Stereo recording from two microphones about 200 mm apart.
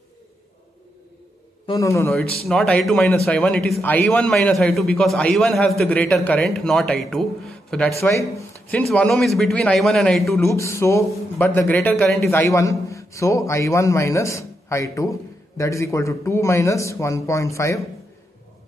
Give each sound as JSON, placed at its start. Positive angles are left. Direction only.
{"t": 1.7, "sound": "a man's voice", "side_deg": 15}
{"t": 2.4, "sound": "a man's voice", "side_deg": 5}
{"t": 8.0, "sound": "a man's voice", "side_deg": 15}
{"t": 10.4, "sound": "a man's voice", "side_deg": 15}